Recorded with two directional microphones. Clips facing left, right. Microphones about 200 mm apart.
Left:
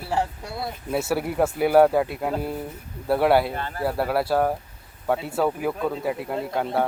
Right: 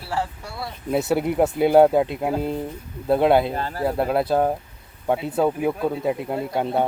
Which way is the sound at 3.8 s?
20° right (ahead or behind).